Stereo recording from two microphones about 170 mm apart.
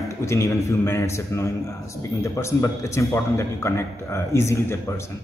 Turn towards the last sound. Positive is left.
turn(degrees=15)  # may be behind; listen again after turning